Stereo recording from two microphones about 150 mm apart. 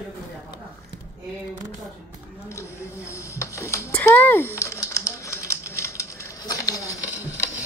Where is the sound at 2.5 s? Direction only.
20° left (ahead or behind).